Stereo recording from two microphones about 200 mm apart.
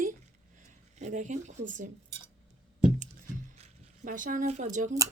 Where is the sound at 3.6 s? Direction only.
40° right (ahead or behind).